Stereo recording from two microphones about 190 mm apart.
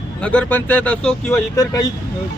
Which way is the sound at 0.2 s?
5° left (ahead or behind).